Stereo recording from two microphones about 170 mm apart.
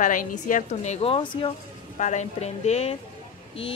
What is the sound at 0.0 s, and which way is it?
A woman's voice, 50° left (ahead or behind).